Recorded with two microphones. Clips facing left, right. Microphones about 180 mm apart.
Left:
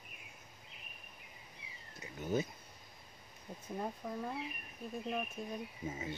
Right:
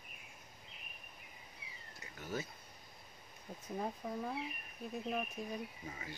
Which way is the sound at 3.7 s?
Centre (ahead or behind).